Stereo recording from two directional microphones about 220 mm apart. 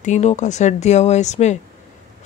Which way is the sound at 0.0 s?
30° left (ahead or behind).